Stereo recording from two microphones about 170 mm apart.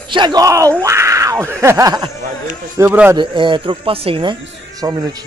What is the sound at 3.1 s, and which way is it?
Speech, 30° right (ahead or behind).